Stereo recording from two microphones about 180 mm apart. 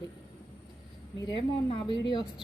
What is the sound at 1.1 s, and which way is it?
Speech, 25° left (ahead or behind).